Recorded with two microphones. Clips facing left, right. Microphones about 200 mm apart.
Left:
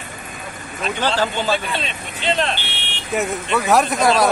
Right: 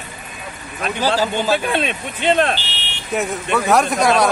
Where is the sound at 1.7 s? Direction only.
55° right (ahead or behind).